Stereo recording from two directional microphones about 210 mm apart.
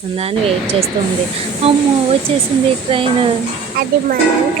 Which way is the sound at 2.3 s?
25° right (ahead or behind).